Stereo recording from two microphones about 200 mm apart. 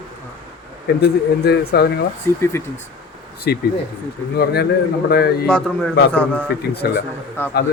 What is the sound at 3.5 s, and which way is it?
Speech, 55° left (ahead or behind).